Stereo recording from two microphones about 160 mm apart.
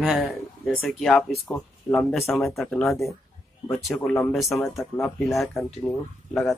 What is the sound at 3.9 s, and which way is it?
Speech, 15° left (ahead or behind).